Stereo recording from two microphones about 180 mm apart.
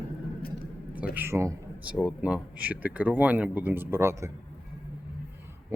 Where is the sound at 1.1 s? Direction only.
10° right (ahead or behind).